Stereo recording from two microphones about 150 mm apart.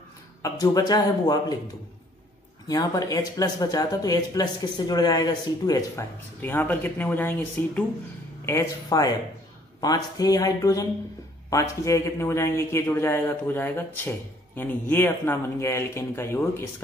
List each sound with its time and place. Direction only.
0.4 s speech: 25° left (ahead or behind)
2.7 s speech: 25° left (ahead or behind)
6.4 s speech: 15° left (ahead or behind)